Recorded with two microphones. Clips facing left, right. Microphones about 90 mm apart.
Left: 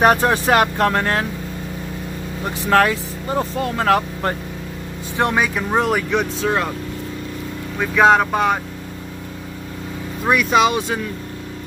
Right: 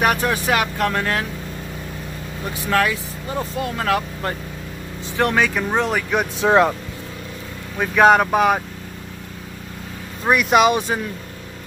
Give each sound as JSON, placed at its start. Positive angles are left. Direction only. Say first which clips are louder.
{"t": 0.0, "sound": "speech", "louder": "left 4 dB", "side_deg": 35}
{"t": 2.4, "sound": "speech", "louder": "left 4 dB", "side_deg": 35}
{"t": 5.1, "sound": "speech", "louder": "even", "side_deg": 20}
{"t": 5.4, "sound": "speech", "louder": "left 1 dB", "side_deg": 0}
{"t": 6.4, "sound": "speech", "louder": "right 5 dB", "side_deg": -20}
{"t": 8.0, "sound": "speech", "louder": "right 1 dB", "side_deg": -5}
{"t": 10.2, "sound": "speech", "louder": "right 1 dB", "side_deg": -10}